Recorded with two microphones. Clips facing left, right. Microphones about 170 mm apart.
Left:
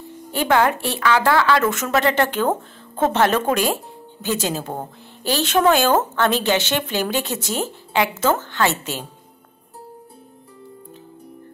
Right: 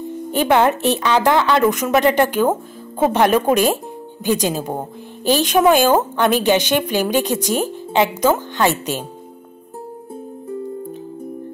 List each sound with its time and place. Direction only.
0.0 s speech: 15° right (ahead or behind)